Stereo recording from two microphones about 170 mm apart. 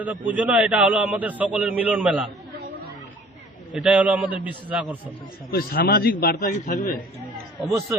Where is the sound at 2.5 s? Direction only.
75° right (ahead or behind).